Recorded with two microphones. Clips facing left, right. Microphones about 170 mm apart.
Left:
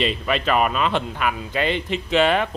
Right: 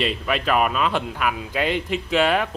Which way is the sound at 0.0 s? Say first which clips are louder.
Left 1 dB; 5° right (ahead or behind).